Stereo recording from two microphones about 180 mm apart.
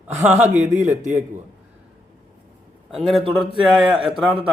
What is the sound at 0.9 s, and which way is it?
Speech, 10° right (ahead or behind).